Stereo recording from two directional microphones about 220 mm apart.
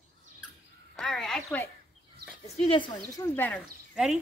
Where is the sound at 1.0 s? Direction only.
Centre (ahead or behind).